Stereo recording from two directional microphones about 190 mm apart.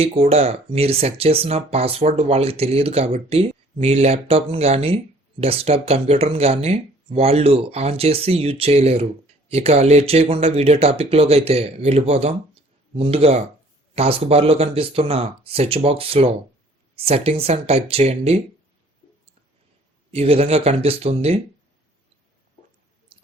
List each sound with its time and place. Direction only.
0.0 s speech: 35° right (ahead or behind)
20.1 s speech: 30° right (ahead or behind)